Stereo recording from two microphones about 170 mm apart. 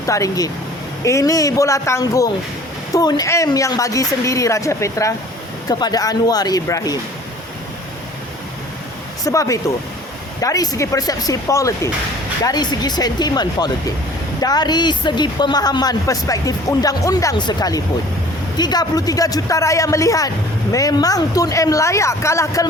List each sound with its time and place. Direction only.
0.0 s a woman's voice: 20° left (ahead or behind)
9.2 s a woman's voice: 20° left (ahead or behind)